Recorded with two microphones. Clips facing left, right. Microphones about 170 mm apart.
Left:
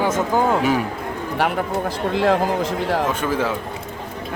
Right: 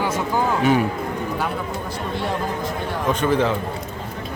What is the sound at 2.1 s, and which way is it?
Speech, 90° left.